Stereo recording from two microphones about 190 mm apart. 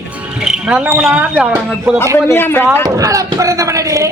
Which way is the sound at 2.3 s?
10° left (ahead or behind).